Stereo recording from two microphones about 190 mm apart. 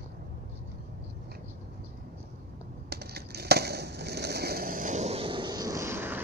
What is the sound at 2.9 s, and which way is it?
Skateboard, 55° right (ahead or behind).